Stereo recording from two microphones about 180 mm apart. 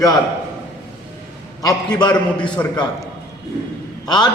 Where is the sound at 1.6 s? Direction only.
20° left (ahead or behind).